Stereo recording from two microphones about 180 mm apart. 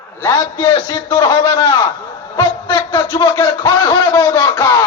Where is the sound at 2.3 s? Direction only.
20° left (ahead or behind).